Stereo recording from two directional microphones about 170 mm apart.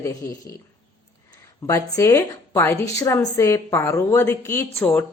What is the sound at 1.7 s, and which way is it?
Speech, 20° left (ahead or behind).